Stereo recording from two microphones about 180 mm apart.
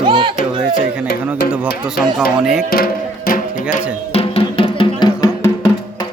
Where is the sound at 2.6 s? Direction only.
55° left (ahead or behind).